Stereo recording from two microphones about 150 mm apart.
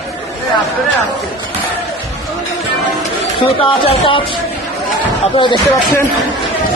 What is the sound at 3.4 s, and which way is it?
Speech, 35° left (ahead or behind).